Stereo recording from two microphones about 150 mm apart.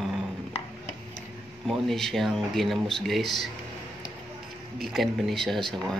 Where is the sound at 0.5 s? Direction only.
40° left (ahead or behind).